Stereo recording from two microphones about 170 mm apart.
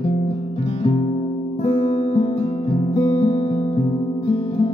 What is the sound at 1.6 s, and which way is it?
Music, 40° left (ahead or behind).